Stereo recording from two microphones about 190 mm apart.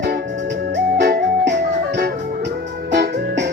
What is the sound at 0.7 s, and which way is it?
Music, 65° right (ahead or behind).